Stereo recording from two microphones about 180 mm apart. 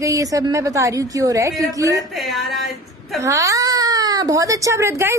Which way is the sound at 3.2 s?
15° right (ahead or behind).